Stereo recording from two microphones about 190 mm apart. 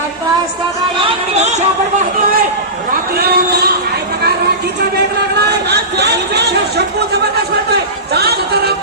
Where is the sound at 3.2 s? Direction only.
55° right (ahead or behind).